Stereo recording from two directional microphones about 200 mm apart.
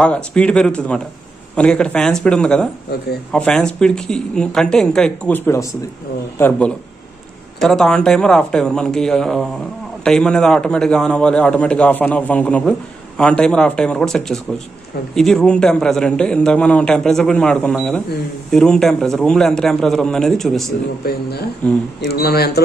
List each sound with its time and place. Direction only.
0.0 s a man's voice: 5° left (ahead or behind)
21.0 s speech: 55° left (ahead or behind)